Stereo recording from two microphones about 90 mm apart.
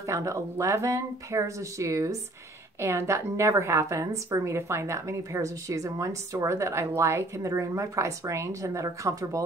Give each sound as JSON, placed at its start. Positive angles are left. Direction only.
{"t": 0.0, "sound": "a woman's voice", "side_deg": -35}